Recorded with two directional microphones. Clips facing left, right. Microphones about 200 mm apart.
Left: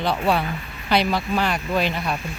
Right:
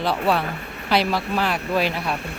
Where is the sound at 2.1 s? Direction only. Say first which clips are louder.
Even; 65° right (ahead or behind).